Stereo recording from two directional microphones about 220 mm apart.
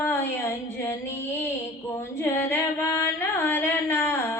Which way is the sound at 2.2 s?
10° left (ahead or behind).